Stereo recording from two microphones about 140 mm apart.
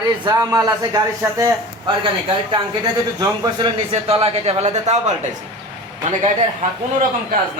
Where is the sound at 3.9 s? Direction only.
45° right (ahead or behind).